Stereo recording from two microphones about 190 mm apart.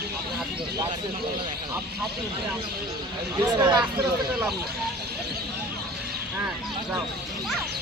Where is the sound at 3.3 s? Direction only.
20° right (ahead or behind).